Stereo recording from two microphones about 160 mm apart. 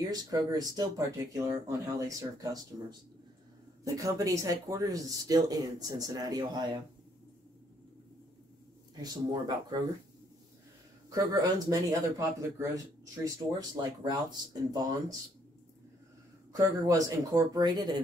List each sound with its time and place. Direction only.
0.1 s speech: 25° right (ahead or behind)
9.0 s speech: 25° right (ahead or behind)
11.1 s speech: 20° right (ahead or behind)
16.5 s speech: 20° right (ahead or behind)